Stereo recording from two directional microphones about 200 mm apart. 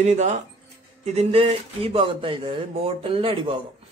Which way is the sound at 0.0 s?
35° right (ahead or behind).